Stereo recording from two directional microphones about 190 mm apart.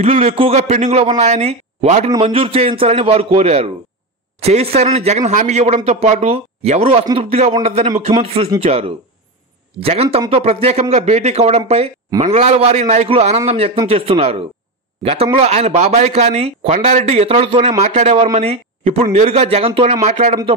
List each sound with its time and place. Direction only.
0.0 s speech: 35° right (ahead or behind)